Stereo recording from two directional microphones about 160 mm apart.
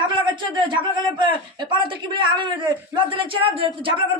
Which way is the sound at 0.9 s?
30° right (ahead or behind).